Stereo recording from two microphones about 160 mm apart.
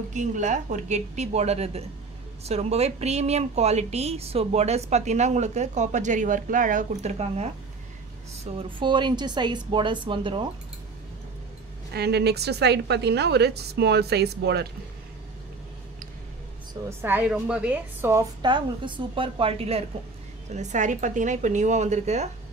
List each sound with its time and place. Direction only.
0.1 s speech: 50° right (ahead or behind)
8.5 s a woman's voice: 30° right (ahead or behind)
11.9 s a woman's voice: 90° right
17.0 s a woman's voice: 10° right (ahead or behind)
18.4 s a woman's voice: 30° right (ahead or behind)
20.5 s speech: 50° right (ahead or behind)